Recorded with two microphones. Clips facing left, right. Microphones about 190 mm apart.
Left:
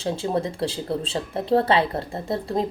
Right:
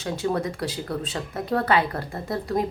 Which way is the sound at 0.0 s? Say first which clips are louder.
Left 1 dB; 25° left (ahead or behind).